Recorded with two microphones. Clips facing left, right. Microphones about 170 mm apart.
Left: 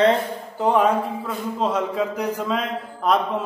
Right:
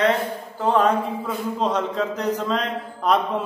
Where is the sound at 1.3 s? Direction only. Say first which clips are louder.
Even; 5° left (ahead or behind).